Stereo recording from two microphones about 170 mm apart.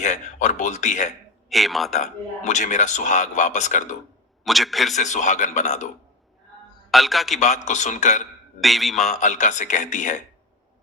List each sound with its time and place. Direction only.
0.0 s a man's voice: 45° left (ahead or behind)
1.5 s a man's voice: centre (ahead or behind)
2.0 s a man's voice: 45° left (ahead or behind)
4.4 s a man's voice: centre (ahead or behind)
4.9 s a man's voice: 45° left (ahead or behind)
6.9 s a man's voice: centre (ahead or behind)
7.3 s a man's voice: 45° left (ahead or behind)
8.6 s a man's voice: centre (ahead or behind)
9.0 s a man's voice: 45° left (ahead or behind)